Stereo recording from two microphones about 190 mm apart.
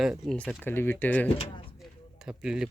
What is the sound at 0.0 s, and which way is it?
Speech, centre (ahead or behind).